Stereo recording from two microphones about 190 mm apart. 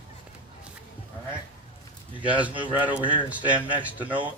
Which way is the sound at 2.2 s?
5° right (ahead or behind).